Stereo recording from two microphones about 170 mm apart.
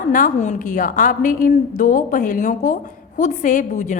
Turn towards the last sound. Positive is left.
turn(degrees=45)  # may be behind; listen again after turning